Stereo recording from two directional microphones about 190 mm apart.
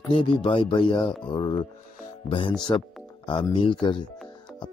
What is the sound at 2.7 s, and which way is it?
Speech, 20° left (ahead or behind).